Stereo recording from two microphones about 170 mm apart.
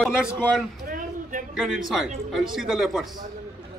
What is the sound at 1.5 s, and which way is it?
Speech, centre (ahead or behind).